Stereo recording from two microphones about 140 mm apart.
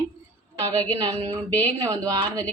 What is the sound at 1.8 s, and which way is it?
Speech, 25° right (ahead or behind).